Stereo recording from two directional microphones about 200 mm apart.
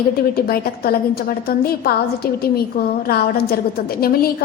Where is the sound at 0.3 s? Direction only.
50° left (ahead or behind).